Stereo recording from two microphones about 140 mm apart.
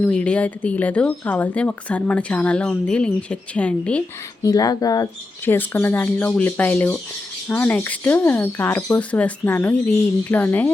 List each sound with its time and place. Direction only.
0.0 s speech: 5° left (ahead or behind)
4.4 s speech: 25° left (ahead or behind)
5.5 s speech: 15° left (ahead or behind)